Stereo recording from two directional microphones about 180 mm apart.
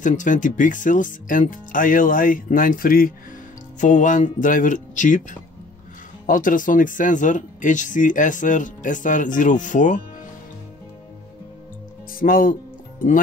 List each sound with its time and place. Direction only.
0.0 s speech: 45° left (ahead or behind)
6.2 s speech: 50° left (ahead or behind)
12.1 s speech: 50° left (ahead or behind)